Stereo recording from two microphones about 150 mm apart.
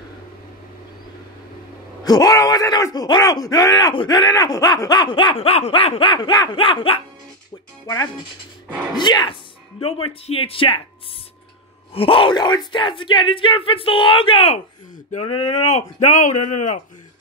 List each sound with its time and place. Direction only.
2.0 s speech: 25° left (ahead or behind)
7.8 s speech: 25° left (ahead or behind)
11.9 s speech: 35° left (ahead or behind); by 16.7 s 55° left (ahead or behind)